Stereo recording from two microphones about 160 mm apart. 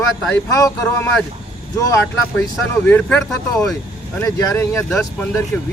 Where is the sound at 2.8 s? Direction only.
10° left (ahead or behind).